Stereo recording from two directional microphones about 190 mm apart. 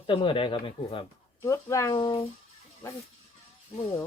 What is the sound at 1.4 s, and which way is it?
Speech, 15° left (ahead or behind).